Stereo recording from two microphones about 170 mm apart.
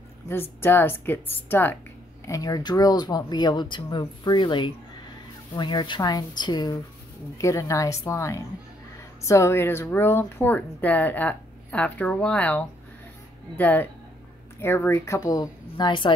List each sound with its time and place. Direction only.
0.3 s speech: 15° left (ahead or behind)